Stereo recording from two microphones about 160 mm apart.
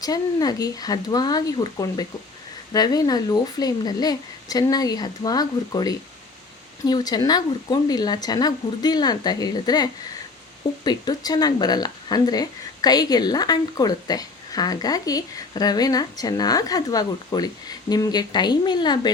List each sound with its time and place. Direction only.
0.0 s speech: 25° left (ahead or behind)